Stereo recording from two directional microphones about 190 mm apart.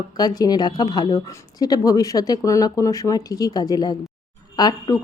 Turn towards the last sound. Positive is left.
turn(degrees=20)  # may be behind; listen again after turning